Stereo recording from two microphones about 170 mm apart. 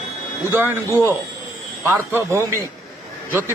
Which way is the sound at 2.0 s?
15° right (ahead or behind).